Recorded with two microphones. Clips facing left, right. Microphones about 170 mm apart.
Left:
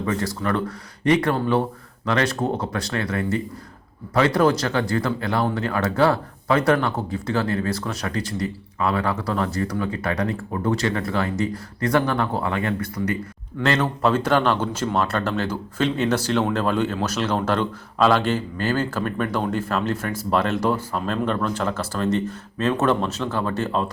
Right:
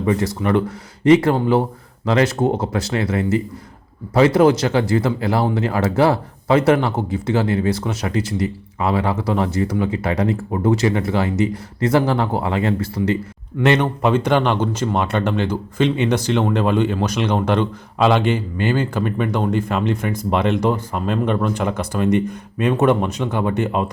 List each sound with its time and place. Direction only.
0.0 s speech: 20° right (ahead or behind)